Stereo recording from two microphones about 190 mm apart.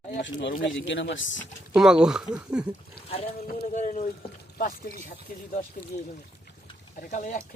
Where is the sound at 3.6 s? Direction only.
40° left (ahead or behind).